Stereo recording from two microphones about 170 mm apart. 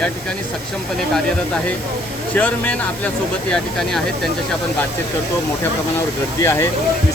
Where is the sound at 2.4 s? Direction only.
10° left (ahead or behind).